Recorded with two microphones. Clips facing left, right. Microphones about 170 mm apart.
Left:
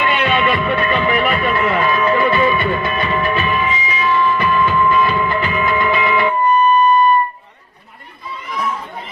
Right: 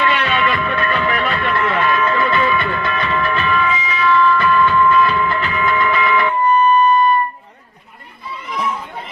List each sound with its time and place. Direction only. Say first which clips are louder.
0.0 s music: left 1 dB; 15° left (ahead or behind)
2.4 s train: left 2 dB; 15° left (ahead or behind)
4.9 s music: even; 20° left (ahead or behind)